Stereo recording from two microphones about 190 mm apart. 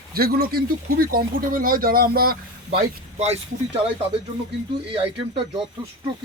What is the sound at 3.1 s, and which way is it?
Speech, 35° right (ahead or behind).